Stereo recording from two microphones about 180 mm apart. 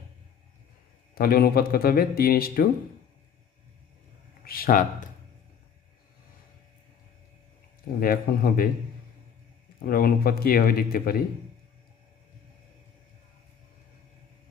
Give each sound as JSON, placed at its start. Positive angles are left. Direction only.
{"t": 1.1, "sound": "speech", "side_deg": 55}
{"t": 4.5, "sound": "speech", "side_deg": 55}
{"t": 8.0, "sound": "speech", "side_deg": 55}
{"t": 9.8, "sound": "speech", "side_deg": 55}